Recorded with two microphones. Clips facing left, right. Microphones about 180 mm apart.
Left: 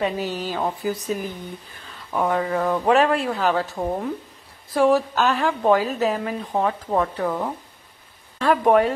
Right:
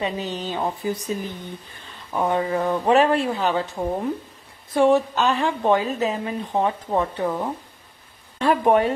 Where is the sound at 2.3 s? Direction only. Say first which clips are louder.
Right 1 dB; centre (ahead or behind).